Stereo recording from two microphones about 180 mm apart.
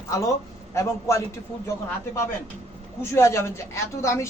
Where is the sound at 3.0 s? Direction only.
15° left (ahead or behind).